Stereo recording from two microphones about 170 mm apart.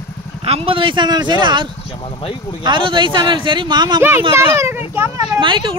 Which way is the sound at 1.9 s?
30° left (ahead or behind).